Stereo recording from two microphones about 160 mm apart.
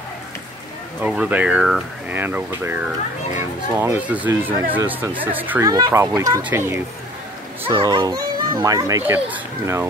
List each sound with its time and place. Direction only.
1.0 s speech: 5° right (ahead or behind)
5.7 s speech: 20° right (ahead or behind)
7.6 s a child's voice: 30° right (ahead or behind)